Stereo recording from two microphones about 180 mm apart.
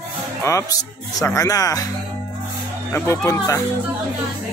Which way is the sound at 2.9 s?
15° left (ahead or behind).